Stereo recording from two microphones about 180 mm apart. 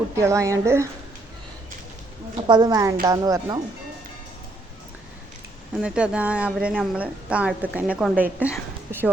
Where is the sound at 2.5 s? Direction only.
20° right (ahead or behind).